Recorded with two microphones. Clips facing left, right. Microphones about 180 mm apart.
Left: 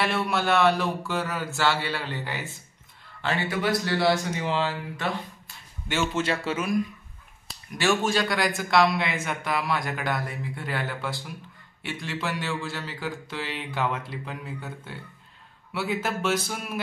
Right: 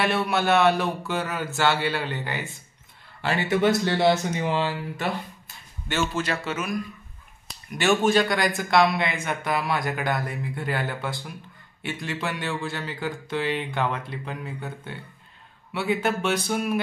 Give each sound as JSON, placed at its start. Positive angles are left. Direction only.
{"t": 0.0, "sound": "speech", "side_deg": 0}
{"t": 3.4, "sound": "speech", "side_deg": -25}
{"t": 5.9, "sound": "a man's voice", "side_deg": 15}
{"t": 6.2, "sound": "speech", "side_deg": 30}
{"t": 7.7, "sound": "speech", "side_deg": 0}